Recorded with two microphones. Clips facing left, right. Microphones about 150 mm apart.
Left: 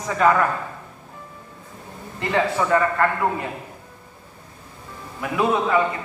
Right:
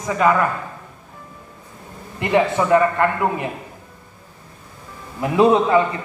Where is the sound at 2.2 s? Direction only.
15° right (ahead or behind).